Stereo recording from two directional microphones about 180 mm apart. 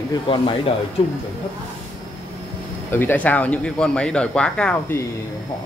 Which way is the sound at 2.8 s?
10° left (ahead or behind).